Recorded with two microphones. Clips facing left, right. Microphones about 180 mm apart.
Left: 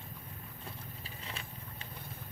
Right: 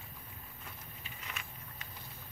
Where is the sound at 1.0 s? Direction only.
30° left (ahead or behind).